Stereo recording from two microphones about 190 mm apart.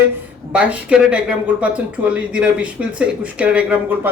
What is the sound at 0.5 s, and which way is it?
Speech, 5° right (ahead or behind).